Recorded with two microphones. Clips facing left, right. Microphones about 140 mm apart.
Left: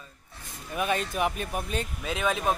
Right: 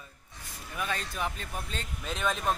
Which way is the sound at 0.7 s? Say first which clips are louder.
Left 7 dB; 20° left (ahead or behind).